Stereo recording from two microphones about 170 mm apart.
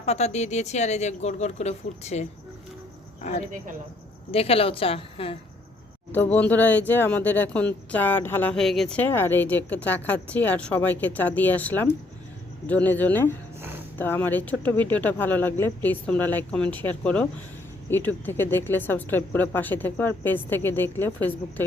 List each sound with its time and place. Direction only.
0.0 s speech: 40° left (ahead or behind)
4.3 s speech: 35° left (ahead or behind)
6.3 s speech: 10° left (ahead or behind)
13.6 s a sound: 10° right (ahead or behind)
14.0 s speech: 10° left (ahead or behind)